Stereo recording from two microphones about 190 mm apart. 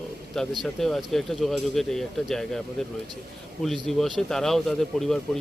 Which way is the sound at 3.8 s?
Centre (ahead or behind).